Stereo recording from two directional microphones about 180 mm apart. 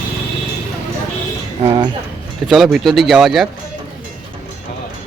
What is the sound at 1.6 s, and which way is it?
Speech, 25° right (ahead or behind).